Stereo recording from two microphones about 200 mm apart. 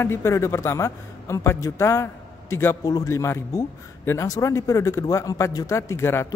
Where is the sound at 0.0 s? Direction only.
15° left (ahead or behind).